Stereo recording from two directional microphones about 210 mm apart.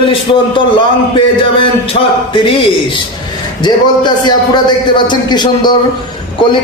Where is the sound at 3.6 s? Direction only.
20° left (ahead or behind).